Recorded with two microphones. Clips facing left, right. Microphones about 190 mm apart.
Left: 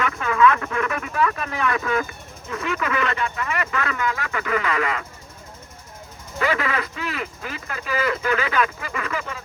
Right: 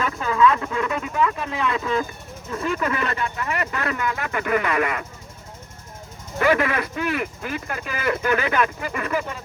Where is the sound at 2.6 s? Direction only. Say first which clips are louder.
Right 2 dB; 40° right (ahead or behind).